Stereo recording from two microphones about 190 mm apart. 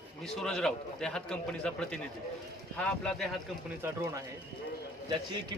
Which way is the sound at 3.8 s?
15° right (ahead or behind).